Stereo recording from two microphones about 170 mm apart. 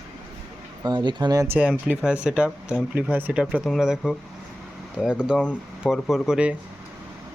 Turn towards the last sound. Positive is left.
turn(degrees=-5)  # may be behind; listen again after turning